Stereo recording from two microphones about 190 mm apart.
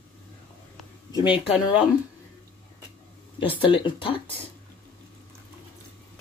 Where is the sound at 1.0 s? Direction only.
25° left (ahead or behind).